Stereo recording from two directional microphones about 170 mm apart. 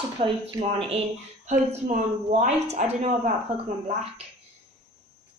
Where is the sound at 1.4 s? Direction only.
45° right (ahead or behind).